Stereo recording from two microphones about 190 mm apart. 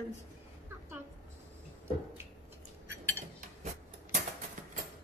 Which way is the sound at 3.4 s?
45° right (ahead or behind).